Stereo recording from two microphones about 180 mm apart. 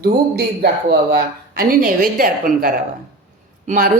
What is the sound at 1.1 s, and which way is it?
Speech, 55° right (ahead or behind).